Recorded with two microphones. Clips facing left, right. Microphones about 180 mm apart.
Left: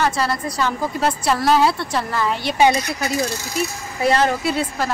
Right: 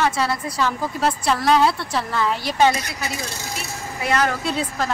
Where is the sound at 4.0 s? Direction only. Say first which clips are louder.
Left 4 dB; 35° left (ahead or behind).